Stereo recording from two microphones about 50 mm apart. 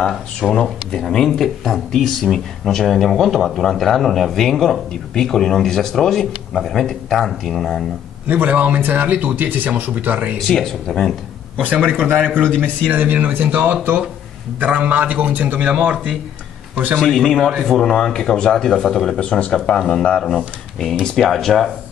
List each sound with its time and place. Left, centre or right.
0.0 s speech: centre
8.3 s speech: right
10.4 s speech: centre
11.6 s speech: right
15.7 s speech: right
17.0 s speech: centre
17.4 s speech: centre
17.6 s speech: centre
19.1 s speech: left
21.3 s speech: centre